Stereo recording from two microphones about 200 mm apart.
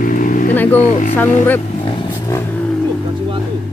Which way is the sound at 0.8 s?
35° left (ahead or behind).